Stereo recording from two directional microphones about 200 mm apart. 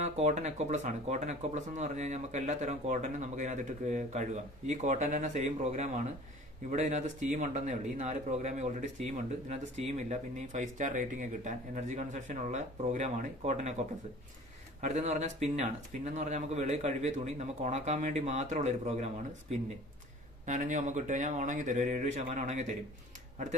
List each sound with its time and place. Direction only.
0.0 s speech: 35° right (ahead or behind)
14.8 s speech: 35° right (ahead or behind)
20.4 s speech: 40° right (ahead or behind)